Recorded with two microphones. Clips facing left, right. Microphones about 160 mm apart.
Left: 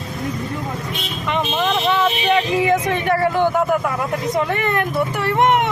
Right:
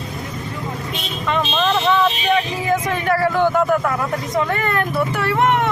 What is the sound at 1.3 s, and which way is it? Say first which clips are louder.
Speech: right 1 dB; 10° left (ahead or behind).